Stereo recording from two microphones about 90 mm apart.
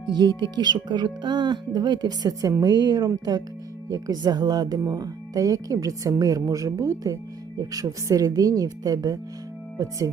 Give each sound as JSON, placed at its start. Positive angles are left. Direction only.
{"t": 0.1, "sound": "speech", "side_deg": -55}